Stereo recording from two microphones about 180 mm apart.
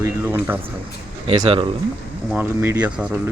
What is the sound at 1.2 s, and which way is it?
Speech, 30° right (ahead or behind).